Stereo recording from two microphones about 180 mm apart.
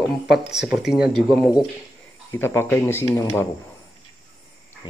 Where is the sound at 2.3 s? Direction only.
15° left (ahead or behind).